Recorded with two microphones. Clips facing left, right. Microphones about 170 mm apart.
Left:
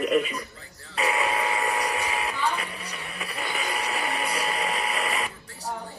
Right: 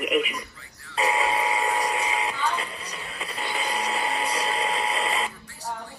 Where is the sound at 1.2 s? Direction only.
20° right (ahead or behind).